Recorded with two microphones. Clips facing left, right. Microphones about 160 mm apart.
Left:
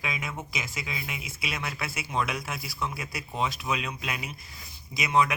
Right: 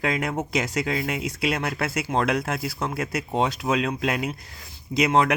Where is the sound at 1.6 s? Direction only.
55° right (ahead or behind).